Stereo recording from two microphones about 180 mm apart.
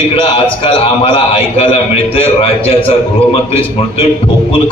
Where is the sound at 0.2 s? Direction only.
30° left (ahead or behind).